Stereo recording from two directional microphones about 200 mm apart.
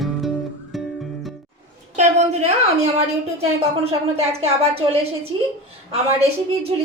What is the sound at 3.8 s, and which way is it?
A woman's voice, 30° right (ahead or behind).